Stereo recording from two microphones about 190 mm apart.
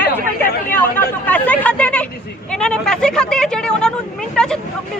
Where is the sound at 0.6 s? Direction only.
10° left (ahead or behind).